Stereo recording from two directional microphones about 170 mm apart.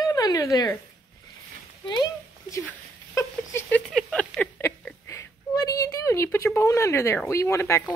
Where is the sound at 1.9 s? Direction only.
20° left (ahead or behind).